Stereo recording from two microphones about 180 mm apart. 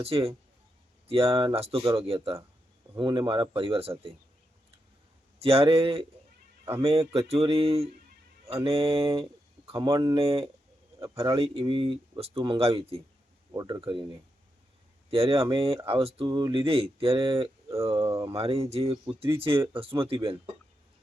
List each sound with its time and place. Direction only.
0.0 s speech: 30° right (ahead or behind)
5.4 s speech: 30° right (ahead or behind)
9.9 s speech: 20° right (ahead or behind)
10.2 s speech: 35° right (ahead or behind)
11.0 s speech: 15° right (ahead or behind)
11.3 s speech: 30° right (ahead or behind)
13.5 s speech: 20° right (ahead or behind)
17.9 s speech: 20° right (ahead or behind)
18.3 s speech: 35° right (ahead or behind)